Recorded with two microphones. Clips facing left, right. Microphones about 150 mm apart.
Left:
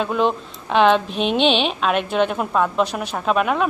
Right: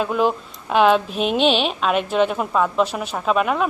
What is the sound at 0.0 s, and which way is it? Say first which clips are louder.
Speech: even; 5° right (ahead or behind).